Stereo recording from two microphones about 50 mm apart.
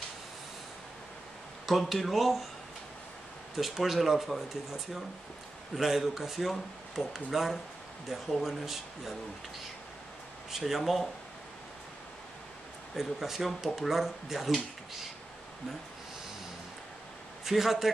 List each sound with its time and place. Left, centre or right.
1.7 s speech: centre
3.5 s speech: centre
10.5 s speech: centre
12.9 s speech: centre
17.5 s speech: centre